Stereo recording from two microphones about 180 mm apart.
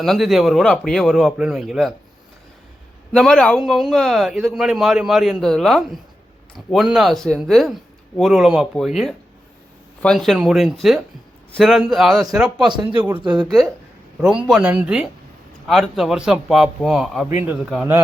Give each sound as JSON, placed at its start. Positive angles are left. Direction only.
{"t": 0.0, "sound": "a man's voice", "side_deg": 0}
{"t": 3.1, "sound": "a man's voice", "side_deg": 5}
{"t": 13.1, "sound": "speech", "side_deg": -25}
{"t": 14.2, "sound": "a man's voice", "side_deg": -5}